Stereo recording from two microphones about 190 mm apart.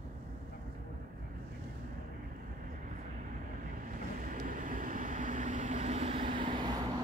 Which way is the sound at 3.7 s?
45° right (ahead or behind).